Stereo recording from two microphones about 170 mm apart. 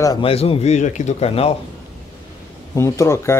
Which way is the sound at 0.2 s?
35° left (ahead or behind).